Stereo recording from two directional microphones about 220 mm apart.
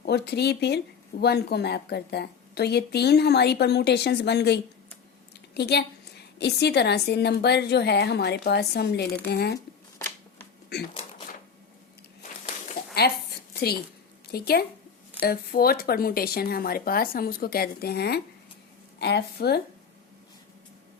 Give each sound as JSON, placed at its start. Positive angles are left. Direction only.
{"t": 0.0, "sound": "a woman's voice", "side_deg": 50}
{"t": 12.8, "sound": "a sound", "side_deg": 45}
{"t": 14.3, "sound": "a woman's voice", "side_deg": 45}